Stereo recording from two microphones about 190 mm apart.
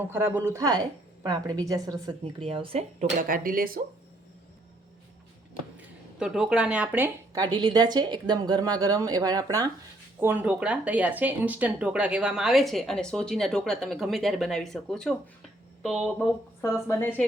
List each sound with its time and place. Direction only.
0.1 s speech: 15° right (ahead or behind); by 3.1 s 30° right (ahead or behind)
3.2 s speech: 45° right (ahead or behind)
5.7 s speech: 5° right (ahead or behind); by 17.2 s 10° left (ahead or behind)